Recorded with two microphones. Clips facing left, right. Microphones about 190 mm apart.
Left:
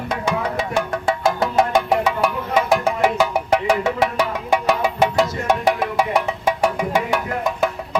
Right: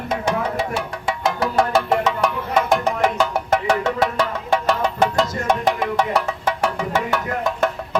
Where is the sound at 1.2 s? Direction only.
25° left (ahead or behind).